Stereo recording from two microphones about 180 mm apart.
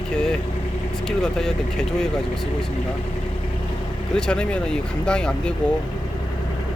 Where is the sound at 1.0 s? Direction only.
5° left (ahead or behind).